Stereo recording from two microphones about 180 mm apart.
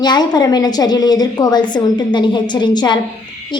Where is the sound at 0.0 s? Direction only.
25° left (ahead or behind).